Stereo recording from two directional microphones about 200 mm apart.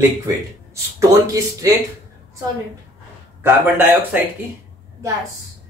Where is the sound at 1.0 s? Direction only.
15° right (ahead or behind).